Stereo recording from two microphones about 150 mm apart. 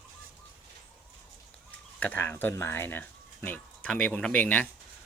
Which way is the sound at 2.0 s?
10° left (ahead or behind).